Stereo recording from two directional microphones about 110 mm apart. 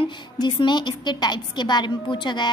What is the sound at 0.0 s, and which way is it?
A woman's voice, 45° left (ahead or behind).